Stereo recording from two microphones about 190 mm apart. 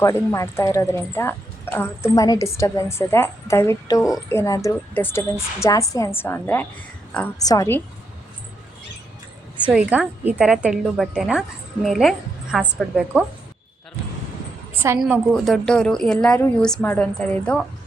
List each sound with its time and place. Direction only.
0.0 s speech: 15° left (ahead or behind)
9.6 s a woman's voice: 5° right (ahead or behind)
14.9 s a woman's voice: centre (ahead or behind)